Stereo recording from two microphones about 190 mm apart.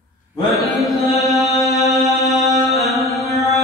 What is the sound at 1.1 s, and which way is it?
Music, centre (ahead or behind).